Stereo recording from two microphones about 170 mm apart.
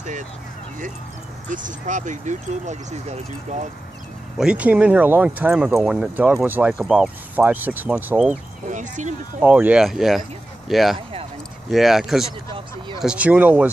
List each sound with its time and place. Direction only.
1.5 s speech: 50° right (ahead or behind)
4.4 s speech: 5° right (ahead or behind)
8.6 s speech: 45° right (ahead or behind)
9.4 s speech: 5° right (ahead or behind)